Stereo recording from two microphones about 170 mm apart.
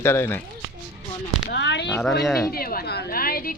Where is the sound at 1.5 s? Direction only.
90° left.